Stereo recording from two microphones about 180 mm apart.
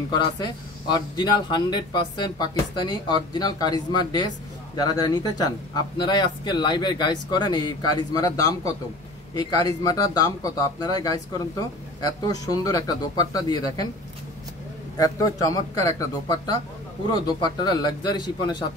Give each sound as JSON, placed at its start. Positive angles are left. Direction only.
{"t": 0.1, "sound": "speech", "side_deg": 25}
{"t": 15.0, "sound": "speech", "side_deg": 20}
{"t": 17.1, "sound": "speech", "side_deg": 25}